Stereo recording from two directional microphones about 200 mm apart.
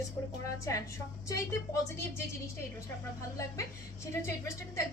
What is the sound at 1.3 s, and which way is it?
A woman's voice, 15° left (ahead or behind).